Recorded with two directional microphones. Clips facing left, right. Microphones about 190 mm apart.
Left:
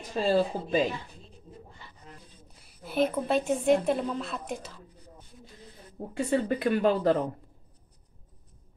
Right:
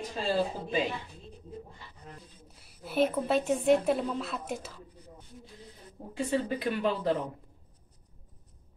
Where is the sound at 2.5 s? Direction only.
5° right (ahead or behind).